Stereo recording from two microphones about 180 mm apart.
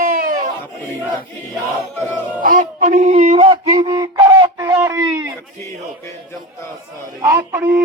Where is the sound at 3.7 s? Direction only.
20° right (ahead or behind).